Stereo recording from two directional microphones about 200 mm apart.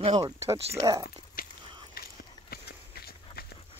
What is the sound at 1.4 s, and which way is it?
Biting, 45° left (ahead or behind).